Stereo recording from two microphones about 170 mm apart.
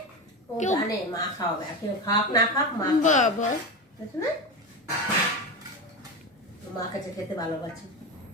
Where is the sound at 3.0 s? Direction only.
45° left (ahead or behind).